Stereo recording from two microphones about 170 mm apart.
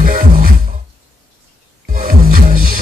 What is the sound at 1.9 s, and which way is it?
Music, 55° right (ahead or behind).